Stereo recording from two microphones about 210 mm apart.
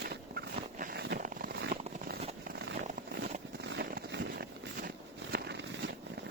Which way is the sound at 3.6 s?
55° right (ahead or behind).